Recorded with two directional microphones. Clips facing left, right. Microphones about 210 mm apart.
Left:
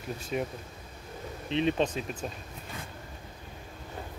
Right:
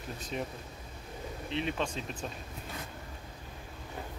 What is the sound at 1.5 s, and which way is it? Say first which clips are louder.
Speech: left 7 dB; 20° left (ahead or behind).